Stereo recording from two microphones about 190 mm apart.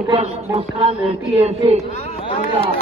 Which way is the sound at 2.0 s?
30° left (ahead or behind).